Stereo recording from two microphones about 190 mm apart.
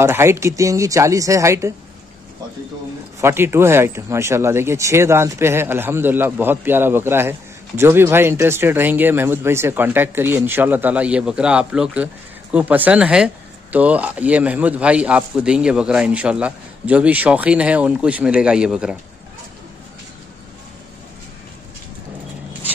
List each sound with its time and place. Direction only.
0.0 s speech: 15° right (ahead or behind)
3.2 s speech: 15° right (ahead or behind)